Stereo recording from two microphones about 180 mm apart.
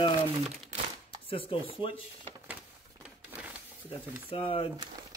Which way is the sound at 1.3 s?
30° left (ahead or behind).